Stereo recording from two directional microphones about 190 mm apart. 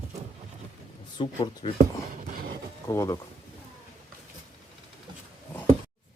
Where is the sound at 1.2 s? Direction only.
25° left (ahead or behind).